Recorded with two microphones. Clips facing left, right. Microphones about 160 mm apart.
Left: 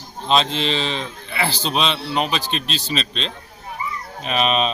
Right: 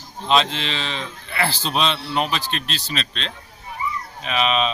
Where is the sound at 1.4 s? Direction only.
20° left (ahead or behind).